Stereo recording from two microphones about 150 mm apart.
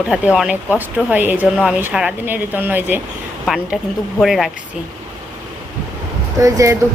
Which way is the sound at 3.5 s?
Centre (ahead or behind).